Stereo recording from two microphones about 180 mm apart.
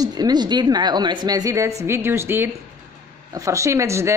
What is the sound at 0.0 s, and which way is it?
A woman's voice, 20° right (ahead or behind).